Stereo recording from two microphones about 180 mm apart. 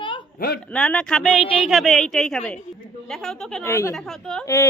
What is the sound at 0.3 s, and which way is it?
Speech, 55° left (ahead or behind).